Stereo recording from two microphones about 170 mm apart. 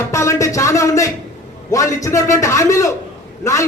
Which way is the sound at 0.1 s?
15° left (ahead or behind).